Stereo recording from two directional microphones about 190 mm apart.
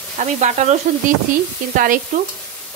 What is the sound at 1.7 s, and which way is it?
Stir, 45° right (ahead or behind).